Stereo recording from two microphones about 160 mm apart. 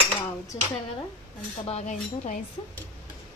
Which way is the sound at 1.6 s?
45° left (ahead or behind).